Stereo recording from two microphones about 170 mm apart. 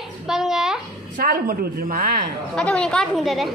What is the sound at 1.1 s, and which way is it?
A woman's voice, 55° right (ahead or behind).